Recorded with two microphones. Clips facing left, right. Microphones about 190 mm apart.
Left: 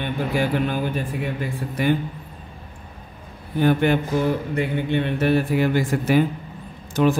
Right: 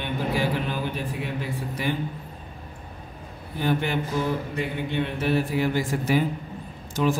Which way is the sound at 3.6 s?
55° left (ahead or behind).